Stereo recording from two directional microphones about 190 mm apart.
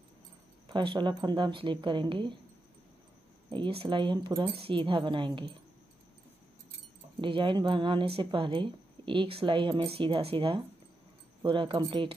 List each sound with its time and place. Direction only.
0.7 s a woman's voice: 25° right (ahead or behind)
3.5 s a woman's voice: 25° right (ahead or behind)
7.2 s a woman's voice: 25° right (ahead or behind)